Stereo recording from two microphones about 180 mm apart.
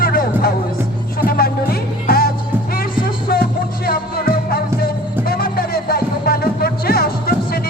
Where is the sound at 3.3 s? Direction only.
55° left (ahead or behind).